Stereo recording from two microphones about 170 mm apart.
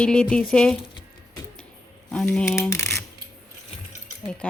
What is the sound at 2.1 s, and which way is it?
Speech, 5° left (ahead or behind).